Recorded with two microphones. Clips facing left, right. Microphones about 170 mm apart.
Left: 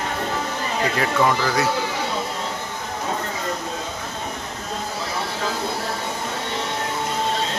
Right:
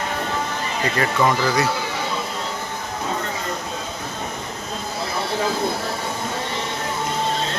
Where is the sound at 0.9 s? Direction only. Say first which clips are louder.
Right 1 dB; centre (ahead or behind).